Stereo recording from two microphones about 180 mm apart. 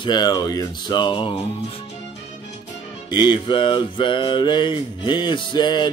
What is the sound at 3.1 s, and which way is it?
Mantra, 25° left (ahead or behind).